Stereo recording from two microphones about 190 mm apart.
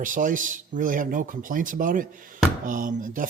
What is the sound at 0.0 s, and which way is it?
Music, 45° right (ahead or behind).